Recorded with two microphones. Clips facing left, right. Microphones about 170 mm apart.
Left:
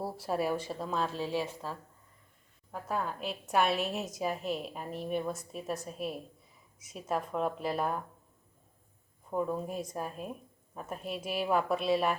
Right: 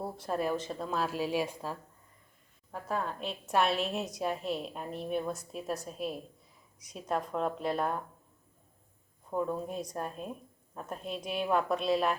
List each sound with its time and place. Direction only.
0.0 s a woman's voice: 5° left (ahead or behind); by 1.8 s 15° right (ahead or behind)
2.7 s a woman's voice: centre (ahead or behind)
9.3 s a woman's voice: 5° left (ahead or behind)